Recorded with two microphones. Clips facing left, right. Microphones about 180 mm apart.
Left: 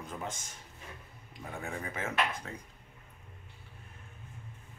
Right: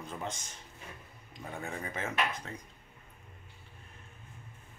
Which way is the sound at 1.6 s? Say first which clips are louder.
Even; 5° left (ahead or behind).